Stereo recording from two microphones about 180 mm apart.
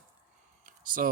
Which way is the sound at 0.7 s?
50° right (ahead or behind).